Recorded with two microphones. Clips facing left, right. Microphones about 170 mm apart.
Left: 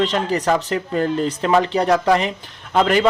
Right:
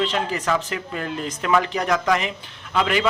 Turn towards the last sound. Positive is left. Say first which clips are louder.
# left 5 dB
turn(degrees=40)  # may be behind; listen again after turning